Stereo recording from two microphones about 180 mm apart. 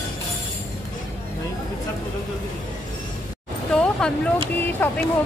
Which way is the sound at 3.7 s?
5° left (ahead or behind).